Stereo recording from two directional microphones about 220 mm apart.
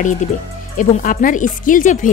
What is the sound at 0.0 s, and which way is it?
Speech, 35° left (ahead or behind).